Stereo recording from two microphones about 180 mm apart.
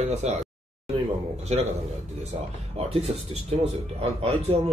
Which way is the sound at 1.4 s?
35° right (ahead or behind).